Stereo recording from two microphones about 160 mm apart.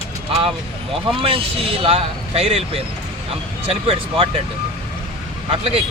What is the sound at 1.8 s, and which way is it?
Speech, 40° right (ahead or behind).